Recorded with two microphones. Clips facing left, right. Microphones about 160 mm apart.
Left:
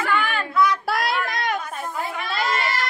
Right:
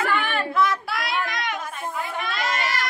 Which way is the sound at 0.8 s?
40° left (ahead or behind).